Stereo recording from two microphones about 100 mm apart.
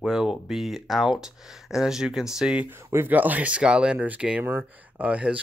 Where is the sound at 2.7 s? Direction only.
25° right (ahead or behind).